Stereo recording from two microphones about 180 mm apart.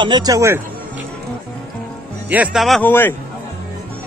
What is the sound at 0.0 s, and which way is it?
Speech, 25° right (ahead or behind).